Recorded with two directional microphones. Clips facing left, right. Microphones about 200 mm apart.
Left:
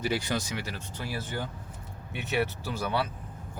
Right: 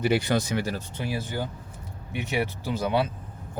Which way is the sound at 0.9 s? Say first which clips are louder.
Right 1 dB; 15° right (ahead or behind).